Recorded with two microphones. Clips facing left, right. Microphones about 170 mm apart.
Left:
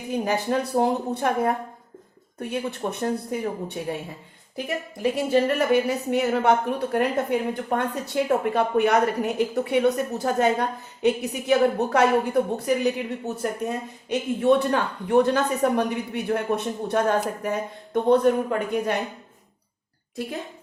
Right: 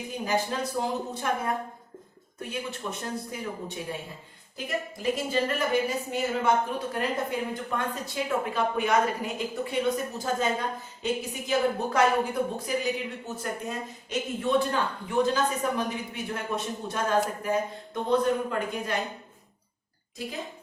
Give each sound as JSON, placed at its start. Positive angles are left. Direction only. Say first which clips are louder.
{"t": 0.1, "sound": "speech", "louder": "left 6 dB", "side_deg": 65}
{"t": 5.1, "sound": "speech", "louder": "left 9 dB", "side_deg": 65}